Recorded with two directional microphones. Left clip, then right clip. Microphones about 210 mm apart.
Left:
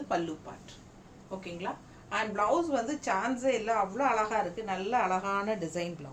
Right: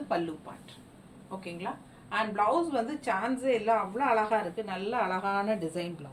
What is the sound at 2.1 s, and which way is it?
A woman's voice, 20° left (ahead or behind).